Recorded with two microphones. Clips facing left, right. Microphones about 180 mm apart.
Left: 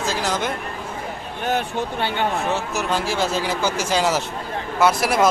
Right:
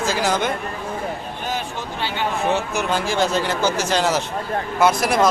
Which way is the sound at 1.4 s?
65° left (ahead or behind).